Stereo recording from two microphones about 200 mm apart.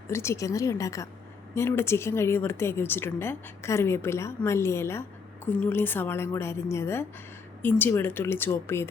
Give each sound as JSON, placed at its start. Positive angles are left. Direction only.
{"t": 0.1, "sound": "a woman's voice", "side_deg": 15}